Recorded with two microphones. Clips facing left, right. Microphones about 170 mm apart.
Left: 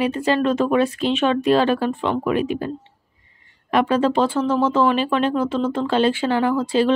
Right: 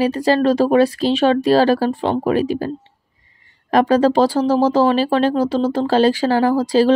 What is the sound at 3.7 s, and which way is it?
Speech, 40° right (ahead or behind).